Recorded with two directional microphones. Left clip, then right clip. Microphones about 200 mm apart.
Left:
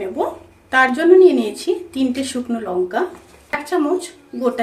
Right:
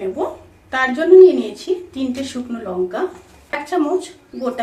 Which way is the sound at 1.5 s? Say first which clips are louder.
Left 2 dB; 55° left (ahead or behind).